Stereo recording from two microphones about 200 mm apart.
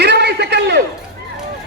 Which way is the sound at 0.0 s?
55° right (ahead or behind).